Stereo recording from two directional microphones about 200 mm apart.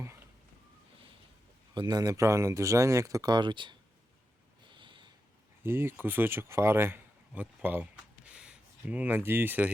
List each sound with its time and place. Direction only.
1.7 s speech: 20° right (ahead or behind)
4.7 s sniff: 25° right (ahead or behind)
5.6 s speech: 10° right (ahead or behind)